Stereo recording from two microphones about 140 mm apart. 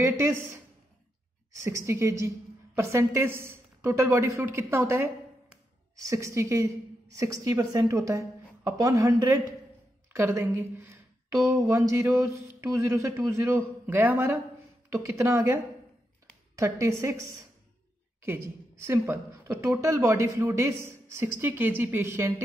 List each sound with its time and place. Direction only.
0.0 s speech: 20° right (ahead or behind)
1.6 s a woman's voice: 20° right (ahead or behind)